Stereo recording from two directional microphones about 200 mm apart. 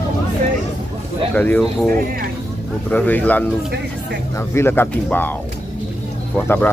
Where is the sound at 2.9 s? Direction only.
10° left (ahead or behind).